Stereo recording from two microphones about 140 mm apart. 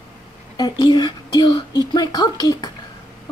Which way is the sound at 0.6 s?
30° left (ahead or behind).